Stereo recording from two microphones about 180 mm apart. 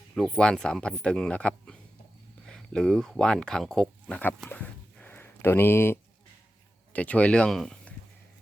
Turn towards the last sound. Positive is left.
turn(degrees=5)  # may be behind; listen again after turning